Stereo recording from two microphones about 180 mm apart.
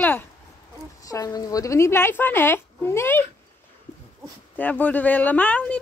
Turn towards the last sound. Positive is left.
turn(degrees=10)  # may be behind; listen again after turning